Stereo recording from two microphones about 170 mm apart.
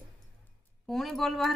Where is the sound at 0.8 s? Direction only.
Centre (ahead or behind).